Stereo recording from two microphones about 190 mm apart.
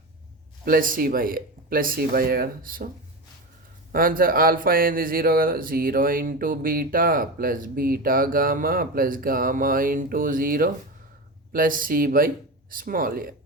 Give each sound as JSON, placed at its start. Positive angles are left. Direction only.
{"t": 0.6, "sound": "speech", "side_deg": -50}
{"t": 3.9, "sound": "speech", "side_deg": -50}